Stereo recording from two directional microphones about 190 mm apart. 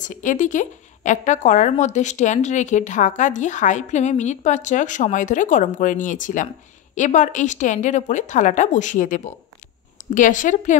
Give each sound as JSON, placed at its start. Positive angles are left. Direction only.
{"t": 0.0, "sound": "a woman's voice", "side_deg": 40}